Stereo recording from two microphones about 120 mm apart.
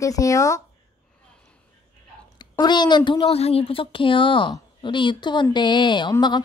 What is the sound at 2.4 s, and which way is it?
A woman's voice, 35° left (ahead or behind).